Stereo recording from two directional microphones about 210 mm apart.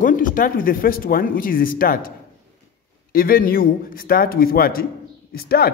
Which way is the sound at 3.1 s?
45° left (ahead or behind).